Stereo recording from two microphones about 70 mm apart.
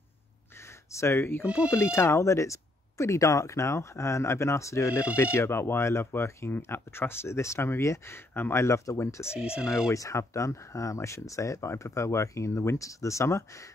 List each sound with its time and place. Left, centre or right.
0.9 s speech: left
9.4 s speech: centre
9.7 s speech: left